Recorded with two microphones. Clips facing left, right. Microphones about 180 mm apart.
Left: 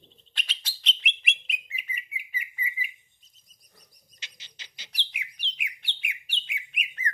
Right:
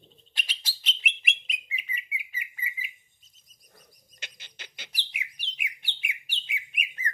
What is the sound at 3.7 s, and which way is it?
Bird, 55° right (ahead or behind).